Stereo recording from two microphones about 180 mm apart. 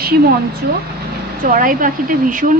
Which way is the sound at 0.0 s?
60° right (ahead or behind).